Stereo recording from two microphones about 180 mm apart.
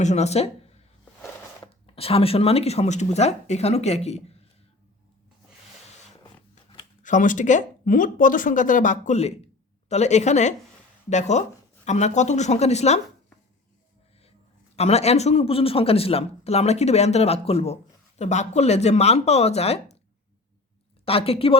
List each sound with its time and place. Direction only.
0.0 s speech: 40° left (ahead or behind)
2.0 s a man's voice: 30° left (ahead or behind)
7.0 s a man's voice: 45° left (ahead or behind)
14.8 s a man's voice: 35° left (ahead or behind)
21.0 s a man's voice: 30° left (ahead or behind)